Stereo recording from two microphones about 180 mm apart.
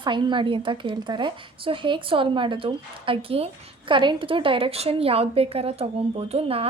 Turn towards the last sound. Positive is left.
turn(degrees=-30)  # may be behind; listen again after turning